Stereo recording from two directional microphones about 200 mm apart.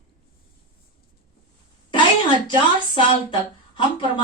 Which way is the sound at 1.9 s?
25° left (ahead or behind).